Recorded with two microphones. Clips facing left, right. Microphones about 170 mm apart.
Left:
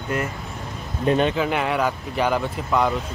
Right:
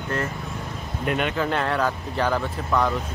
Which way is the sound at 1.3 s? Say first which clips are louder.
Left 2 dB; 10° left (ahead or behind).